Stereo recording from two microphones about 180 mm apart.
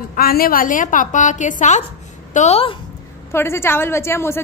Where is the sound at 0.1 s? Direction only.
55° left (ahead or behind); by 2.7 s 35° left (ahead or behind).